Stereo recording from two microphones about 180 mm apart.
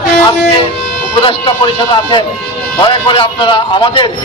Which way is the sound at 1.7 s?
25° left (ahead or behind).